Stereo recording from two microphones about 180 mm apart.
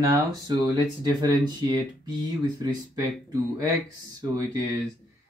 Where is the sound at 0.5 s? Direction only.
25° right (ahead or behind).